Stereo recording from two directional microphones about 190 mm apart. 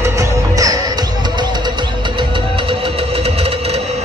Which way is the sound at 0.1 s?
15° right (ahead or behind).